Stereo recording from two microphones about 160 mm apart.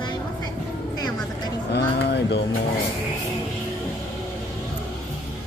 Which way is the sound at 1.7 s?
90° left.